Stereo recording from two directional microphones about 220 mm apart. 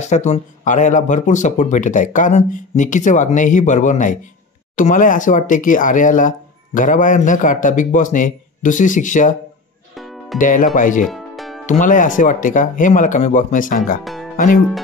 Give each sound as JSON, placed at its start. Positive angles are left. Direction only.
{"t": 0.0, "sound": "speech", "side_deg": 30}
{"t": 9.9, "sound": "music", "side_deg": 0}
{"t": 10.4, "sound": "speech", "side_deg": 35}
{"t": 11.1, "sound": "music", "side_deg": 0}
{"t": 11.6, "sound": "speech", "side_deg": 35}
{"t": 14.0, "sound": "music", "side_deg": 0}
{"t": 14.3, "sound": "speech", "side_deg": 35}